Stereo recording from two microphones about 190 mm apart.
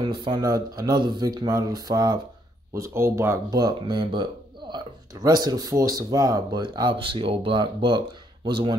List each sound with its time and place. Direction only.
0.0 s speech: 25° right (ahead or behind)